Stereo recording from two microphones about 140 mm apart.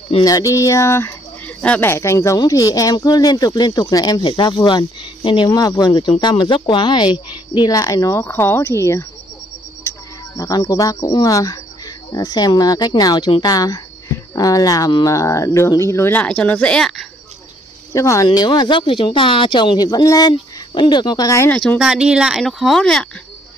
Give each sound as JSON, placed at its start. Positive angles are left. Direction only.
{"t": 0.2, "sound": "speech", "side_deg": 25}
{"t": 17.9, "sound": "speech", "side_deg": 20}
{"t": 21.5, "sound": "speech", "side_deg": 10}
{"t": 21.7, "sound": "speech", "side_deg": -5}